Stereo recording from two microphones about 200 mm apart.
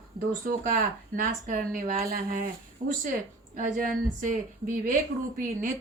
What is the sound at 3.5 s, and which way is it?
Speech, 40° right (ahead or behind).